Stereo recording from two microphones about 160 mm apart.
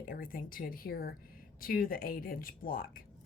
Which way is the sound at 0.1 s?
65° left (ahead or behind).